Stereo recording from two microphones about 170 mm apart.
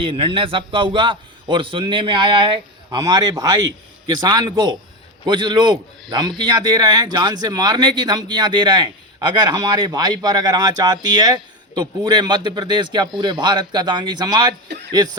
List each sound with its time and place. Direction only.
0.0 s a man's voice: 30° right (ahead or behind)